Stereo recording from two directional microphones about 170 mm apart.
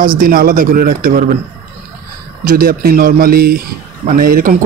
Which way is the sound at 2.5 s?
60° right (ahead or behind).